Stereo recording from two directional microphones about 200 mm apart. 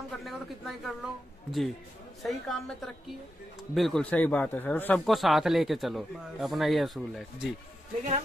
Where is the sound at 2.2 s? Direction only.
Centre (ahead or behind).